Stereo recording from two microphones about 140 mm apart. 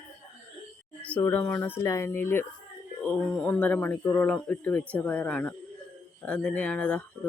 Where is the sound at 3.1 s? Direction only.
5° left (ahead or behind).